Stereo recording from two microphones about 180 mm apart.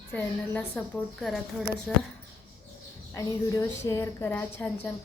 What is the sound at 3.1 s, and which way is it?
Speech, 15° left (ahead or behind).